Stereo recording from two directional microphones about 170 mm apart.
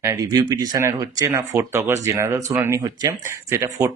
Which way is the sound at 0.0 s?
20° right (ahead or behind).